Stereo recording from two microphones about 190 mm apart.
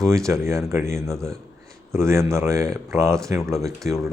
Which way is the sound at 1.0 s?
Centre (ahead or behind).